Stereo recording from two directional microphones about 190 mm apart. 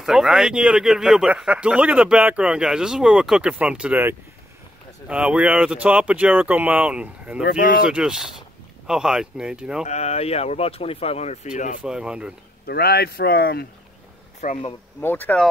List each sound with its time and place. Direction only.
0.0 s speech: 5° right (ahead or behind)
7.4 s speech: 50° left (ahead or behind)
7.8 s speech: 5° right (ahead or behind)
9.8 s speech: 35° left (ahead or behind)
11.8 s speech: 5° right (ahead or behind)
12.6 s speech: 55° left (ahead or behind)
14.4 s speech: 45° left (ahead or behind)
15.0 s speech: 10° left (ahead or behind)